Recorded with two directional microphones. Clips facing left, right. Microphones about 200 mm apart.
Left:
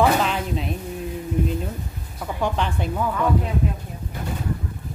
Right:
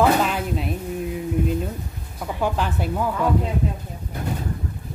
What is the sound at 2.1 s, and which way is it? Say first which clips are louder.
Speech: right 1 dB; 5° right (ahead or behind).